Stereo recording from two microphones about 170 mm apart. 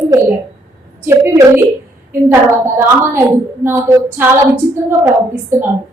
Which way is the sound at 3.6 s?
15° right (ahead or behind).